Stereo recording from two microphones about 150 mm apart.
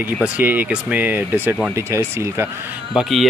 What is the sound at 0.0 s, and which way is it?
Speech, 10° right (ahead or behind).